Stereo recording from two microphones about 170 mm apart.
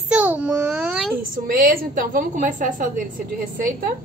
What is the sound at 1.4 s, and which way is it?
A woman's voice, 55° right (ahead or behind).